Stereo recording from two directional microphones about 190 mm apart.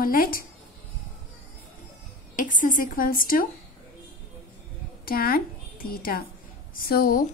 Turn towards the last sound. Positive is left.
turn(degrees=50)  # may be behind; listen again after turning